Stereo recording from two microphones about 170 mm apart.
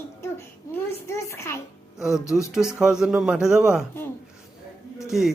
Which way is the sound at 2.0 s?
5° right (ahead or behind).